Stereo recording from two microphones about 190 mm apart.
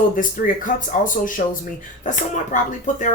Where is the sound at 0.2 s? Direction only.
45° left (ahead or behind).